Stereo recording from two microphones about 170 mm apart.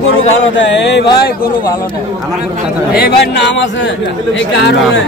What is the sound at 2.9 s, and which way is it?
A man's voice, 80° left.